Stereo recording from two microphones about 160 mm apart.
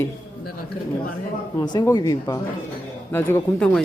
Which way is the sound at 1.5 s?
20° left (ahead or behind).